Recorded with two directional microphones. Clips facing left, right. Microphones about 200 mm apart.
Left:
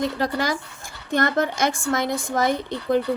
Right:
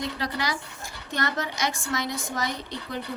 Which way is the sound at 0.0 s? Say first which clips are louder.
Left 6 dB; 50° left (ahead or behind).